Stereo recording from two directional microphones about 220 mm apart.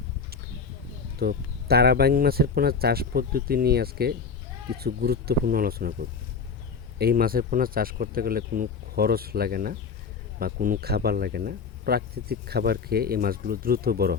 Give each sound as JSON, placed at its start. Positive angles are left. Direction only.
{"t": 1.2, "sound": "speech", "side_deg": -45}